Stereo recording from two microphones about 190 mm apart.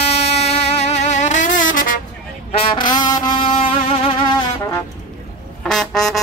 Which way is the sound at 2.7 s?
25° left (ahead or behind).